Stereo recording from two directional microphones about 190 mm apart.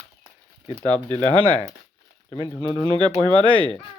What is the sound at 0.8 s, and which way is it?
Speech, 20° right (ahead or behind).